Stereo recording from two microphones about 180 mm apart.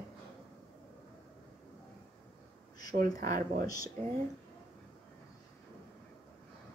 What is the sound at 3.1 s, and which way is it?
Speech, 55° right (ahead or behind).